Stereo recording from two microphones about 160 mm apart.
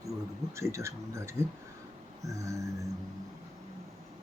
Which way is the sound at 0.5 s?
15° right (ahead or behind).